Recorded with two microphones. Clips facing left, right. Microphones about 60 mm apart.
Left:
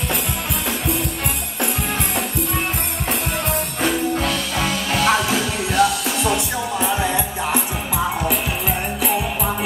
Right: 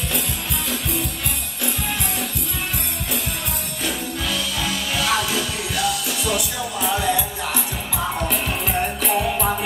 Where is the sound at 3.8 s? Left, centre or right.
Left.